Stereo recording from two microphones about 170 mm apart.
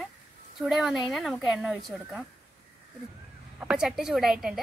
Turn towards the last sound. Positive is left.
turn(degrees=0)  # may be behind; listen again after turning